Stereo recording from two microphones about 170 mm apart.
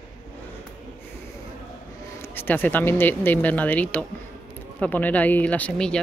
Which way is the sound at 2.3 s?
10° left (ahead or behind).